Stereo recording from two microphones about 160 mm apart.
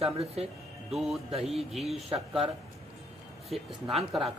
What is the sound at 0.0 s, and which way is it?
Speech, 40° right (ahead or behind).